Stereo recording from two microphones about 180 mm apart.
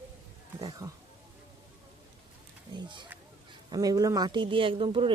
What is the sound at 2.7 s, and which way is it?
Speech, 25° right (ahead or behind).